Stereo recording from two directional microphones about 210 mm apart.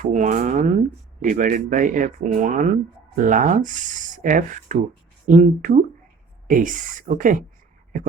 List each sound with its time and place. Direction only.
0.0 s speech: 35° right (ahead or behind)